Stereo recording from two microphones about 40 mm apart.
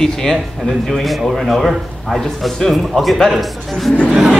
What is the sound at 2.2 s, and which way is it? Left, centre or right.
A man's voice, centre.